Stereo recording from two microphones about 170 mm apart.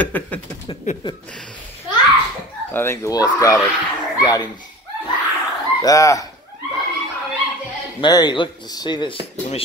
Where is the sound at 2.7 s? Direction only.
15° left (ahead or behind).